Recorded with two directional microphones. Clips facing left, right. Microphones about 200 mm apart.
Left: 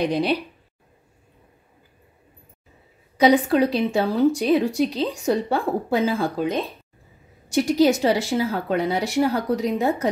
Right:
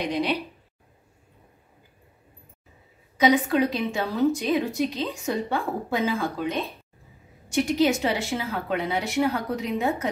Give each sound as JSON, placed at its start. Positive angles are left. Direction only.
{"t": 0.0, "sound": "a woman's voice", "side_deg": 35}
{"t": 3.2, "sound": "a woman's voice", "side_deg": 35}
{"t": 7.4, "sound": "a woman's voice", "side_deg": 35}